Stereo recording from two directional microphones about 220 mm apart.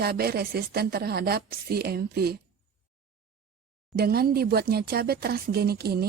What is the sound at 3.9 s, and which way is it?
A woman's voice, 45° right (ahead or behind).